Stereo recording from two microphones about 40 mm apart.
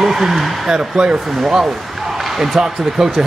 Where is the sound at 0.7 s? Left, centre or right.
Right.